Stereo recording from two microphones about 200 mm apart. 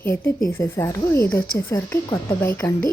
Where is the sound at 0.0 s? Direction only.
15° left (ahead or behind).